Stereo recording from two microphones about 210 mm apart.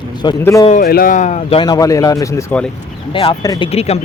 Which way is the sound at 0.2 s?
15° left (ahead or behind).